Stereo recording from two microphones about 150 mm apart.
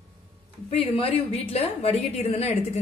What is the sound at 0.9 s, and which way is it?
A woman's voice, 40° left (ahead or behind).